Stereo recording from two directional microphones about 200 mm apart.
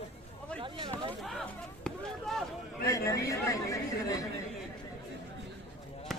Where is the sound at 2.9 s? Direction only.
15° left (ahead or behind).